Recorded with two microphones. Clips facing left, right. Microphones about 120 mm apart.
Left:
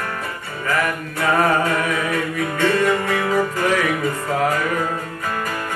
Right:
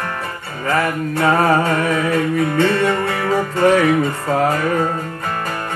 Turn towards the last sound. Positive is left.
turn(degrees=-30)  # may be behind; listen again after turning